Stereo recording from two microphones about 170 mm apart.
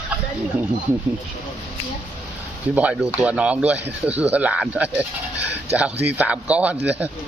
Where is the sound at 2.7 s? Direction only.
5° right (ahead or behind).